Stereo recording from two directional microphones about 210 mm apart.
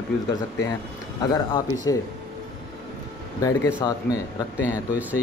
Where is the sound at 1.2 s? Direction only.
20° left (ahead or behind).